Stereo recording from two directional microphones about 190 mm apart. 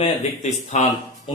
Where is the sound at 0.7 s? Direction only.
40° left (ahead or behind).